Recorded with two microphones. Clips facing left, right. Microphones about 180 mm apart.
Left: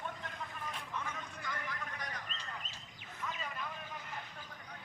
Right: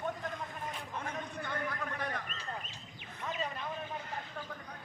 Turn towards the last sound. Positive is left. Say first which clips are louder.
# right 5 dB
turn(degrees=-35)  # may be behind; listen again after turning